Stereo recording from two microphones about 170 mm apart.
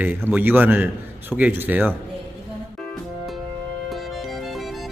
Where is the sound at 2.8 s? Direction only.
5° left (ahead or behind).